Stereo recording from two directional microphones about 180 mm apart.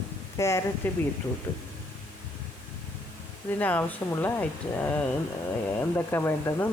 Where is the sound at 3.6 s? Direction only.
10° left (ahead or behind).